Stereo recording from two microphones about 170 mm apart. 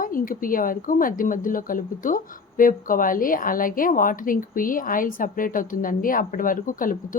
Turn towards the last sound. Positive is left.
turn(degrees=55)  # may be behind; listen again after turning